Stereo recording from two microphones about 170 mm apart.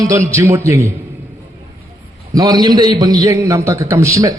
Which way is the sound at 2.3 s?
20° right (ahead or behind).